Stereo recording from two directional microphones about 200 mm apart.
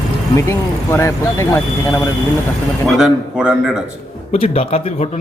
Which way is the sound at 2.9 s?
5° right (ahead or behind).